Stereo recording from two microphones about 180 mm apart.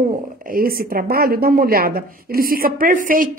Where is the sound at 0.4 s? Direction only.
50° right (ahead or behind).